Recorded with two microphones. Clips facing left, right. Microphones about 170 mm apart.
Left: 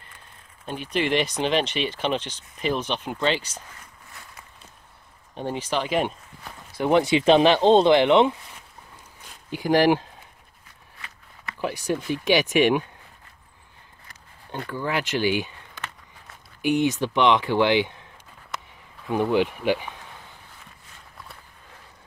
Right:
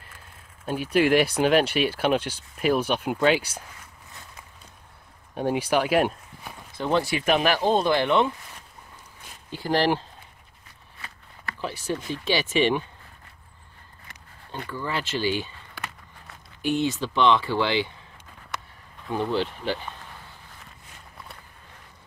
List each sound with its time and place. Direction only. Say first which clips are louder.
0.7 s speech: right 4 dB; 5° right (ahead or behind)
5.3 s speech: right 4 dB; 10° right (ahead or behind)
6.8 s speech: left 5 dB; 20° left (ahead or behind)
9.5 s speech: left 4 dB; 15° left (ahead or behind)
11.6 s speech: left 4 dB; 15° left (ahead or behind)
14.5 s speech: left 3 dB; 15° left (ahead or behind)
16.6 s speech: left 3 dB; 15° left (ahead or behind)
19.0 s speech: left 4 dB; 15° left (ahead or behind)